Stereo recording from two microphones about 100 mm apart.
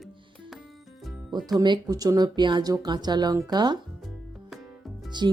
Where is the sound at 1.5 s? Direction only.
45° right (ahead or behind).